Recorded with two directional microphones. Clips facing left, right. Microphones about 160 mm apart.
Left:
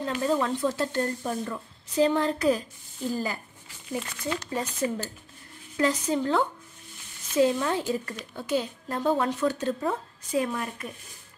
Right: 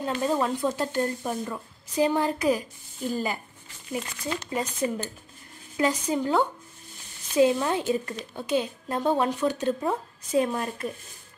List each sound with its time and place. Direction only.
0.2 s a woman's voice: 20° right (ahead or behind)